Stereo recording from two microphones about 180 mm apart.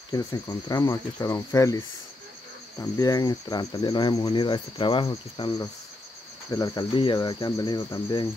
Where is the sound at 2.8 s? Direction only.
20° left (ahead or behind).